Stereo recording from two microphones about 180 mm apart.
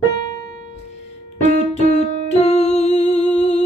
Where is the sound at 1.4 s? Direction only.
40° left (ahead or behind).